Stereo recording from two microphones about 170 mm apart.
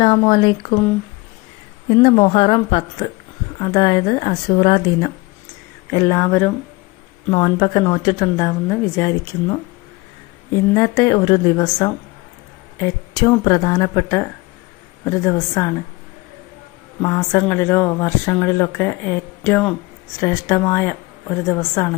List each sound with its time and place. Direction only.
0.3 s a woman's voice: 25° left (ahead or behind)
2.0 s a woman's voice: 30° left (ahead or behind)
17.0 s a woman's voice: 20° left (ahead or behind)